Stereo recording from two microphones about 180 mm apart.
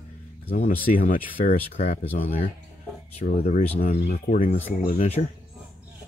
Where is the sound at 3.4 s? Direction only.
40° left (ahead or behind).